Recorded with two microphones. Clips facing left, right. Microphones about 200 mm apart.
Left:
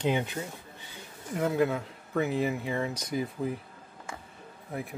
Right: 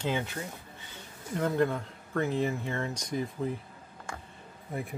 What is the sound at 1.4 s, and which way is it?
Speech, 5° left (ahead or behind).